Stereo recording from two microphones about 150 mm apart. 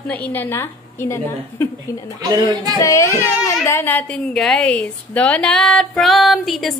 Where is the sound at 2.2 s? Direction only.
25° right (ahead or behind).